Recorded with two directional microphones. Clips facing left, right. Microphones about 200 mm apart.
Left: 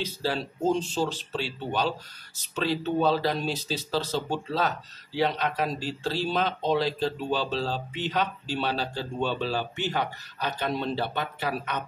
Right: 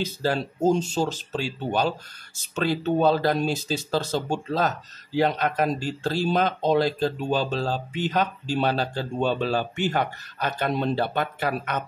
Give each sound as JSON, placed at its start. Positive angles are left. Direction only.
{"t": 0.0, "sound": "speech", "side_deg": -45}